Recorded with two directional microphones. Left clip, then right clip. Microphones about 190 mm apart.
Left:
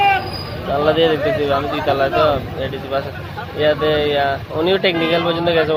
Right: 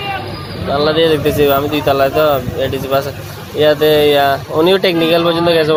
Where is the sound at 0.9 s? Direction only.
25° right (ahead or behind).